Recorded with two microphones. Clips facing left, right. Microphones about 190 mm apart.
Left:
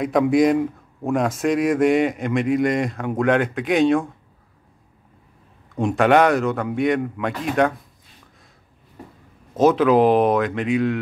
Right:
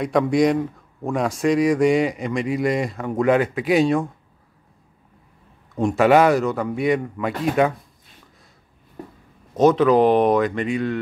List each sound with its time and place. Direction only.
0.0 s a man's voice: 5° left (ahead or behind)
5.8 s a man's voice: centre (ahead or behind)
9.6 s a man's voice: 5° left (ahead or behind)